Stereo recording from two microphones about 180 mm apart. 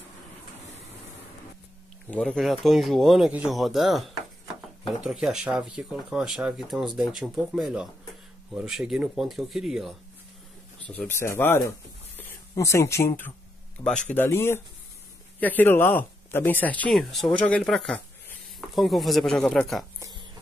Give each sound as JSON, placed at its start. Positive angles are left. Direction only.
{"t": 2.0, "sound": "speech", "side_deg": 5}
{"t": 10.8, "sound": "speech", "side_deg": 10}
{"t": 20.0, "sound": "a sound", "side_deg": -20}